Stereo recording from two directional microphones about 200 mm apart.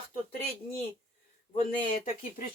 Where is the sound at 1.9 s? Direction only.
35° left (ahead or behind).